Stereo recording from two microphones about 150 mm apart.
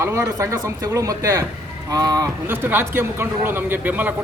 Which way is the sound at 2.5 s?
15° right (ahead or behind).